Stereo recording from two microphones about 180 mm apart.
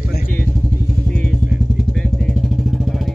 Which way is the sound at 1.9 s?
5° left (ahead or behind).